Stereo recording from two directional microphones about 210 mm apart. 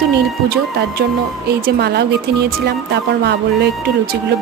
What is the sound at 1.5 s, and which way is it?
Speech, 50° right (ahead or behind).